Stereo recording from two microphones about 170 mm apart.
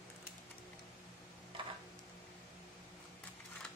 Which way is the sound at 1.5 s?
30° right (ahead or behind).